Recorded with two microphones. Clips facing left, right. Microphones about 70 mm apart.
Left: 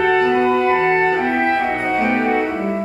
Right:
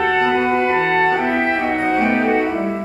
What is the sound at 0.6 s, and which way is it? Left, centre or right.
Music, centre.